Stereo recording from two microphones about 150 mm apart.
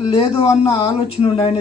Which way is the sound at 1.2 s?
40° left (ahead or behind).